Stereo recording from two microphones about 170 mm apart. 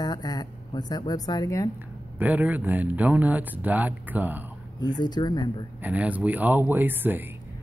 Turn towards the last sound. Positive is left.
turn(degrees=-10)  # may be behind; listen again after turning